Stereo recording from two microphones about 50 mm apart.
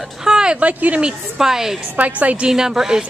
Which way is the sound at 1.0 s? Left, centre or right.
Centre.